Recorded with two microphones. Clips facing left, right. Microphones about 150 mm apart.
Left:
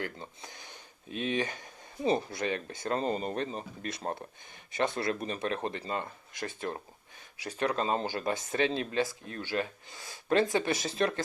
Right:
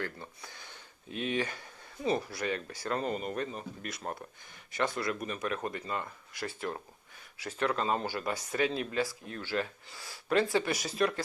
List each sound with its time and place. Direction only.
0.0 s speech: 20° left (ahead or behind)